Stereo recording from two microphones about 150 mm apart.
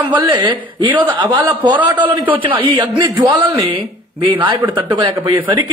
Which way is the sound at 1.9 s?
30° right (ahead or behind).